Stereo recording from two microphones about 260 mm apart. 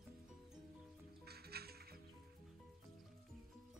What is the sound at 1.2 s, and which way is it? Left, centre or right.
Music, right.